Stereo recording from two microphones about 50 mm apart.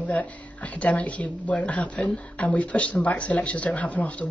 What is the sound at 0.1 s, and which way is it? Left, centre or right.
A woman's voice, left.